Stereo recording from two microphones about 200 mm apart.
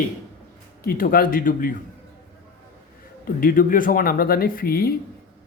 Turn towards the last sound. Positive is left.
turn(degrees=50)  # may be behind; listen again after turning